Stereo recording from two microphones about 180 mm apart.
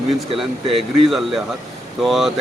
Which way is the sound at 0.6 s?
30° right (ahead or behind).